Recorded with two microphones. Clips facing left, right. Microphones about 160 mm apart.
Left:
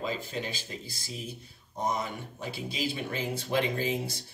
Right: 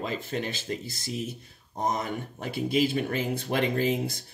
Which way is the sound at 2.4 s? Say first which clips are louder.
Right 8 dB; 55° right (ahead or behind).